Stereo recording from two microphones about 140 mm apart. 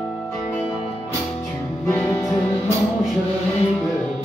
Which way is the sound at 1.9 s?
20° left (ahead or behind).